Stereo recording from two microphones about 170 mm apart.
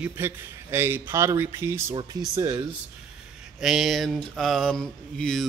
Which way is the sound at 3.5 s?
Centre (ahead or behind).